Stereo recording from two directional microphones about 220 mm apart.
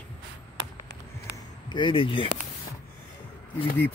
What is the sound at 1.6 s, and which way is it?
Speech, 20° left (ahead or behind).